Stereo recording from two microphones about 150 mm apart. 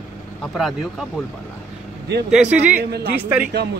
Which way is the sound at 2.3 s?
10° right (ahead or behind).